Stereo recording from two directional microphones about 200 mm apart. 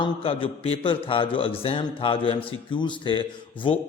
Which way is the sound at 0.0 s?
25° left (ahead or behind).